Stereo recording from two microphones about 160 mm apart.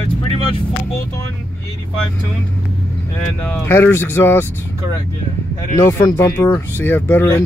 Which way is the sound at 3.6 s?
15° left (ahead or behind).